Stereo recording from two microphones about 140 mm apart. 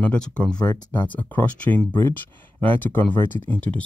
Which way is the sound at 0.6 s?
20° left (ahead or behind).